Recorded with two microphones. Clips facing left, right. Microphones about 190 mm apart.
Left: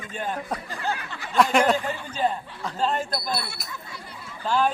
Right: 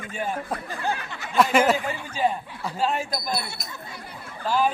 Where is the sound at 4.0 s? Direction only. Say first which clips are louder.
Right 2 dB; 55° right (ahead or behind).